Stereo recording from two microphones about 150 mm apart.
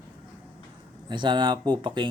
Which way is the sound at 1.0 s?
30° right (ahead or behind).